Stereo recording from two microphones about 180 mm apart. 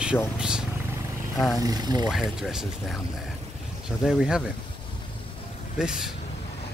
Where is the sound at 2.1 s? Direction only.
Centre (ahead or behind).